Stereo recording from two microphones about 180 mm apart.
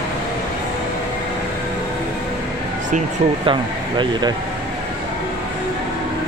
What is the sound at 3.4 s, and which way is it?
Speech, 25° right (ahead or behind).